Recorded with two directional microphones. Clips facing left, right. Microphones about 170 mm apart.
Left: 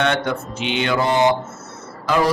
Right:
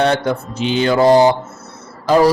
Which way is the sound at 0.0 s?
35° right (ahead or behind).